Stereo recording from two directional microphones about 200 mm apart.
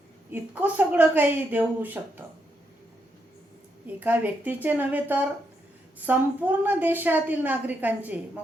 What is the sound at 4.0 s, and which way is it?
A woman's voice, 10° right (ahead or behind).